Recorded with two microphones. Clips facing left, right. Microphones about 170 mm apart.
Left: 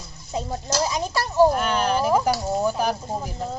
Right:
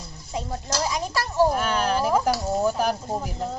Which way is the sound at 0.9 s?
20° left (ahead or behind).